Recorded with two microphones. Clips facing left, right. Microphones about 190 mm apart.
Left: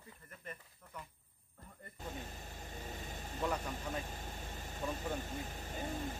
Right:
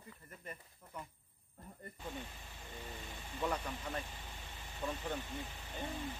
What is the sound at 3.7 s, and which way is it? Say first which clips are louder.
Speech: left 1 dB; 45° left (ahead or behind).